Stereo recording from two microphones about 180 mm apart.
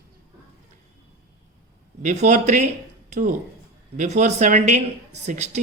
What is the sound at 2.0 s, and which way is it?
A woman's voice, 45° right (ahead or behind).